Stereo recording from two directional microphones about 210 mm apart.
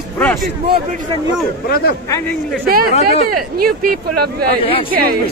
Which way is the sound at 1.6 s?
45° left (ahead or behind).